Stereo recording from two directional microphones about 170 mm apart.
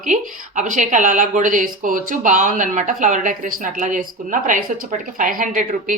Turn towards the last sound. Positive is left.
turn(degrees=-50)  # may be behind; listen again after turning